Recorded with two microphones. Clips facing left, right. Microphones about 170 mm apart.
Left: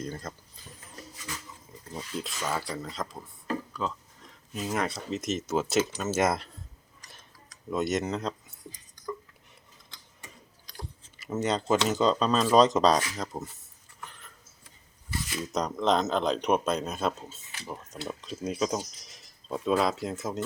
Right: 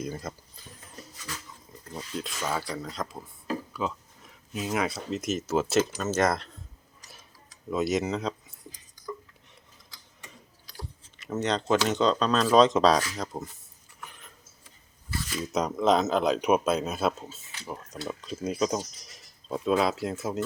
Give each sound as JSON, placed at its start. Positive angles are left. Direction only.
{"t": 0.0, "sound": "speech", "side_deg": -10}
{"t": 1.9, "sound": "speech", "side_deg": 0}
{"t": 7.7, "sound": "speech", "side_deg": 0}
{"t": 11.2, "sound": "speech", "side_deg": 5}
{"t": 14.0, "sound": "a sound", "side_deg": -15}
{"t": 15.5, "sound": "speech", "side_deg": -5}